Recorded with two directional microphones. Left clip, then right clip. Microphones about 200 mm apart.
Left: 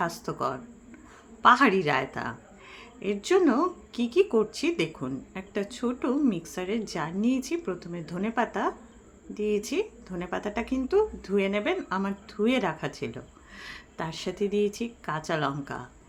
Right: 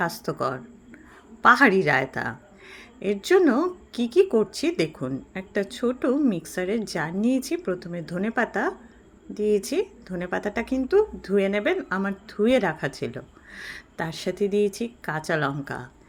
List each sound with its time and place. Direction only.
0.0 s a woman's voice: 20° right (ahead or behind)